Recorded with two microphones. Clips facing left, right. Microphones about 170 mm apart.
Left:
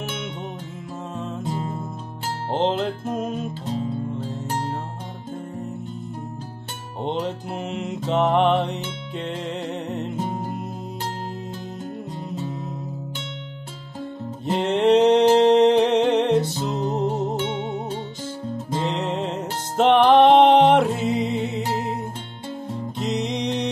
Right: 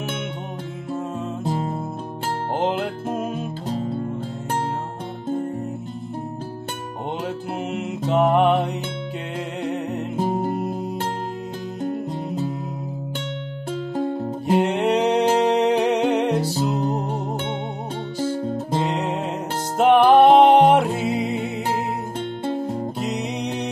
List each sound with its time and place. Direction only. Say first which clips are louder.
1.4 s music: right 4 dB; 35° right (ahead or behind)
2.5 s music: left 2 dB; 10° right (ahead or behind)
7.8 s music: right 2 dB; 5° right (ahead or behind)
10.1 s music: right 5 dB; 35° right (ahead or behind)
10.4 s music: right 6 dB; 60° right (ahead or behind)
14.6 s music: left 6 dB; 10° right (ahead or behind)
19.8 s music: right 1 dB; 10° right (ahead or behind)
23.0 s music: left 6 dB; 10° right (ahead or behind)